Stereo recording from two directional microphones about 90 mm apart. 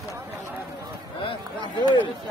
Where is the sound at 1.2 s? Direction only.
75° left (ahead or behind).